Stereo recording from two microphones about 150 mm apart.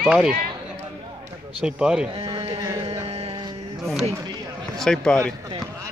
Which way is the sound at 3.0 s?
40° right (ahead or behind).